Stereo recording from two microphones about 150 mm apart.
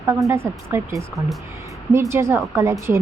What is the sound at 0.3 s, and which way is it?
Speech, 15° right (ahead or behind).